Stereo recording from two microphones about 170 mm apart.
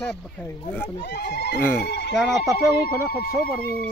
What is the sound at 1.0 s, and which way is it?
Speech, 70° left (ahead or behind).